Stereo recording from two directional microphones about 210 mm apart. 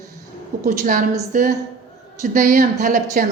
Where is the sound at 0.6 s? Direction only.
40° right (ahead or behind).